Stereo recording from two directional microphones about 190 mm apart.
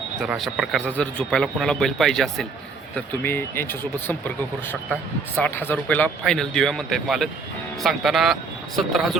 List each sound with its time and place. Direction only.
0.2 s a man's voice: centre (ahead or behind)
5.4 s a man's voice: 10° left (ahead or behind)